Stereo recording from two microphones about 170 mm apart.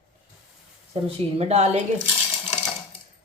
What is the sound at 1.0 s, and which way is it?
Speech, 40° right (ahead or behind).